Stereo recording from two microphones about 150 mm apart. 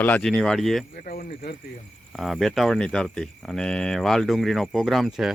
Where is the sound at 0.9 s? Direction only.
70° left (ahead or behind).